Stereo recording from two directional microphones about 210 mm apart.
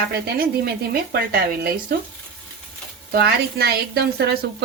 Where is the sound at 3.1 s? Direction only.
50° right (ahead or behind).